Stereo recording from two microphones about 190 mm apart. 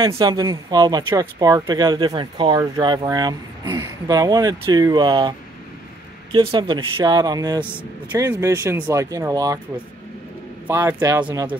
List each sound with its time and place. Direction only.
0.2 s speech: 20° right (ahead or behind)
6.3 s speech: 25° right (ahead or behind)
10.7 s speech: 15° right (ahead or behind)